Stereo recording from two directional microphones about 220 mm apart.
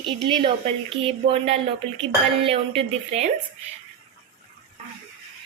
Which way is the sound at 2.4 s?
25° right (ahead or behind).